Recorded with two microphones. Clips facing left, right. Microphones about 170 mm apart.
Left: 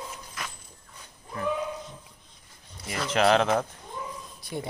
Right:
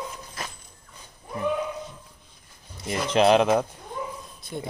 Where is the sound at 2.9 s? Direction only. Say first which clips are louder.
Right 3 dB; 20° right (ahead or behind).